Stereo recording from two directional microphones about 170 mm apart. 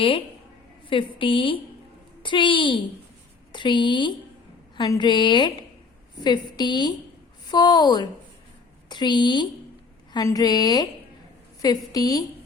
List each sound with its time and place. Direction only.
0.9 s a woman's voice: 30° left (ahead or behind)